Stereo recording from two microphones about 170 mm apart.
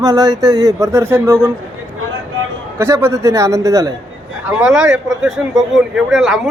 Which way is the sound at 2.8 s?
15° right (ahead or behind).